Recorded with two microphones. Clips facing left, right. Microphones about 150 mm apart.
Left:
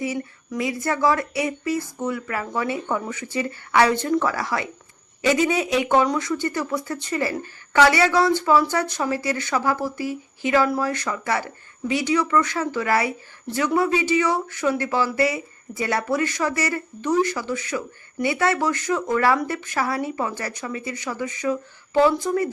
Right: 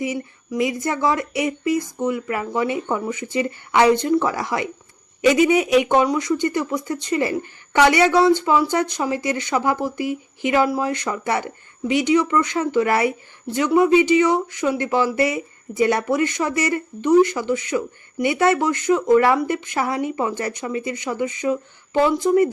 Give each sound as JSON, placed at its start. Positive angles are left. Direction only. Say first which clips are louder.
{"t": 0.0, "sound": "speech", "louder": "right 2 dB", "side_deg": -15}